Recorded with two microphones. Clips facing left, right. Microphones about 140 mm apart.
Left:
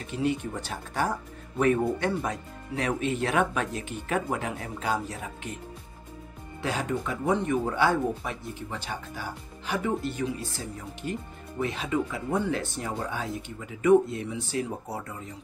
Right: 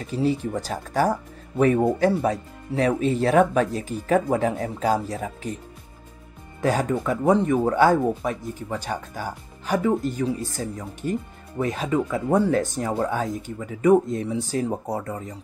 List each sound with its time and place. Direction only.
0.0 s speech: 35° right (ahead or behind)
6.6 s speech: 45° right (ahead or behind)